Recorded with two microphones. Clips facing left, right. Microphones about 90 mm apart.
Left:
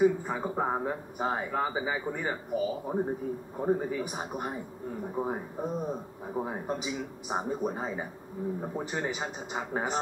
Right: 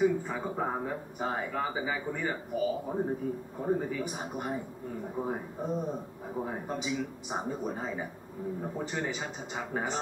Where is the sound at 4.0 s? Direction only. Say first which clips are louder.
Left 1 dB; 15° left (ahead or behind).